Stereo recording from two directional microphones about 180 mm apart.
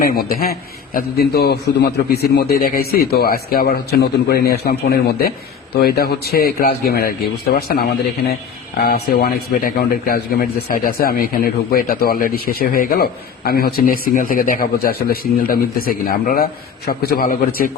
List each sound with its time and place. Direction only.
0.0 s a man's voice: 55° left (ahead or behind)